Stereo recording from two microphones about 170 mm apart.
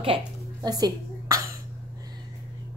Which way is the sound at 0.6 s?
20° right (ahead or behind).